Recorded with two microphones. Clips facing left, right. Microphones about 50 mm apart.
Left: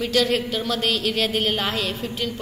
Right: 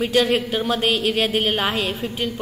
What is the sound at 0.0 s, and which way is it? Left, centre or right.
A woman's voice, centre.